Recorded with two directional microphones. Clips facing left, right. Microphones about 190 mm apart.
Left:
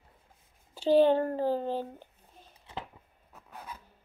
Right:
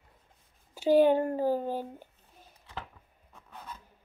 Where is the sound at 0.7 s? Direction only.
10° right (ahead or behind).